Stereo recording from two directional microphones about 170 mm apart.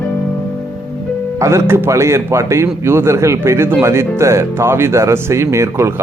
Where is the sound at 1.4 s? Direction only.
15° right (ahead or behind).